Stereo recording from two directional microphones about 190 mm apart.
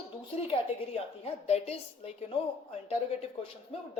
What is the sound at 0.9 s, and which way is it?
A woman's voice, 35° left (ahead or behind).